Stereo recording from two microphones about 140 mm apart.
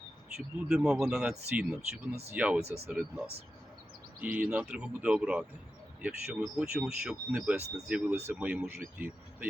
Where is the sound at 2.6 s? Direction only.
50° right (ahead or behind).